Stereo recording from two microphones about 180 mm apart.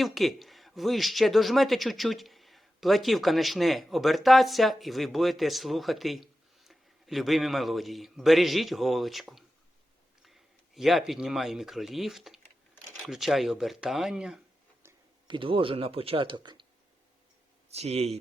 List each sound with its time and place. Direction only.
0.0 s speech: centre (ahead or behind)
15.3 s speech: 30° right (ahead or behind)
17.7 s speech: 35° right (ahead or behind)